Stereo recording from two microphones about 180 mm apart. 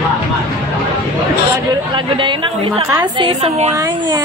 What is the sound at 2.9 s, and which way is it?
Speech, 25° right (ahead or behind).